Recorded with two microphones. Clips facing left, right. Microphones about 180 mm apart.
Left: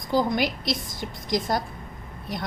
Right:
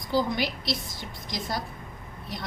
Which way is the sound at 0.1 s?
50° left (ahead or behind).